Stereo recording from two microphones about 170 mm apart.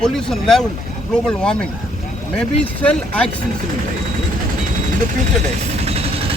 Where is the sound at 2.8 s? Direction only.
5° left (ahead or behind).